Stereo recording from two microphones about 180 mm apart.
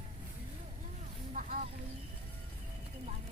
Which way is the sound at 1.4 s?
45° right (ahead or behind).